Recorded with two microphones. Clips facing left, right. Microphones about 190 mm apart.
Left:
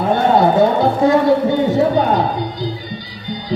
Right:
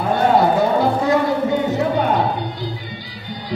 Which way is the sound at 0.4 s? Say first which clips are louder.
Left 3 dB; 30° left (ahead or behind).